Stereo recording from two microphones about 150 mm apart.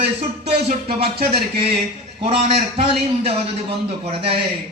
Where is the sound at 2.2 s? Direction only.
40° right (ahead or behind).